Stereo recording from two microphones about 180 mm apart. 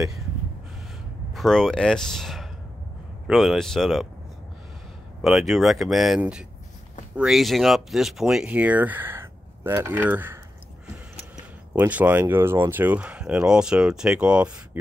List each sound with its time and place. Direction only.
1.3 s speech: centre (ahead or behind)
5.2 s speech: centre (ahead or behind)
11.7 s speech: 10° right (ahead or behind)